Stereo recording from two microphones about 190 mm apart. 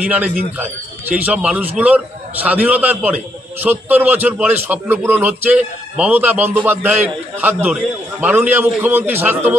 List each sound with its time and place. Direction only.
0.0 s a man's voice: 5° right (ahead or behind)